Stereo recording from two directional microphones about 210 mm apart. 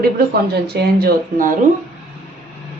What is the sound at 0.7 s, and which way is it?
Speech, 50° right (ahead or behind).